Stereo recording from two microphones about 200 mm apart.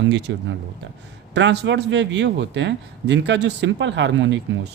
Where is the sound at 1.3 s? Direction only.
60° right (ahead or behind).